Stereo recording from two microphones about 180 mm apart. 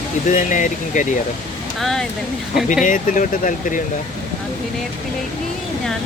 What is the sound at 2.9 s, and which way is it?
Speech, 45° left (ahead or behind).